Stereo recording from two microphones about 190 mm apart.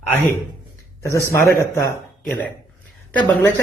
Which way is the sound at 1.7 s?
10° left (ahead or behind).